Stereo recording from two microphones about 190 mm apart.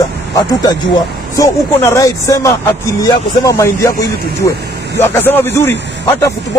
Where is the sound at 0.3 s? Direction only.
20° left (ahead or behind).